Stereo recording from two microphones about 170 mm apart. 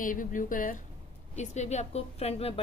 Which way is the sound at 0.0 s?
50° left (ahead or behind).